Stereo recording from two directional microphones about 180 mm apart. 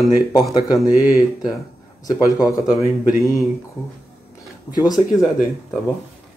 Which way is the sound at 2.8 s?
15° right (ahead or behind).